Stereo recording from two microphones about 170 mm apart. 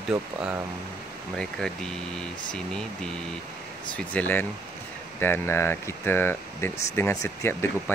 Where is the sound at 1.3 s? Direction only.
5° left (ahead or behind).